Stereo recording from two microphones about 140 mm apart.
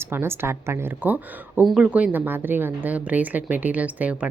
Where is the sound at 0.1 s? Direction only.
15° right (ahead or behind).